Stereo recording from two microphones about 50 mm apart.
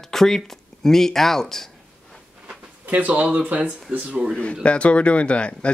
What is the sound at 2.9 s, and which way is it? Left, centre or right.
Speech, right.